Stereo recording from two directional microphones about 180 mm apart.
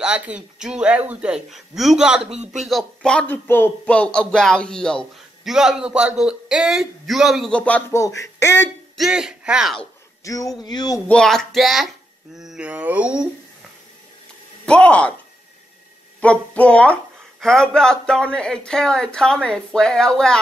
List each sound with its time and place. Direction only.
0.0 s a man's voice: 5° right (ahead or behind); by 8.6 s 15° left (ahead or behind)
8.9 s speech: centre (ahead or behind)
10.2 s speech: 20° left (ahead or behind)
11.1 s a man's voice: 5° left (ahead or behind)
14.7 s a sound: 5° left (ahead or behind)
16.2 s a sound: 5° left (ahead or behind)
17.4 s a man's voice: 5° left (ahead or behind)